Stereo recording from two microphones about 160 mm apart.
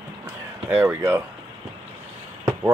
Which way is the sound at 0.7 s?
10° right (ahead or behind).